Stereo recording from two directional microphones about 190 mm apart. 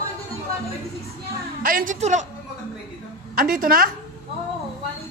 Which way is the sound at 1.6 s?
45° right (ahead or behind).